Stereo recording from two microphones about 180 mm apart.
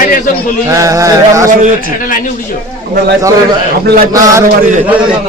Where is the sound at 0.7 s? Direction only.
15° right (ahead or behind).